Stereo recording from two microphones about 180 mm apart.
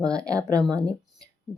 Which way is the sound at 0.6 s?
5° left (ahead or behind).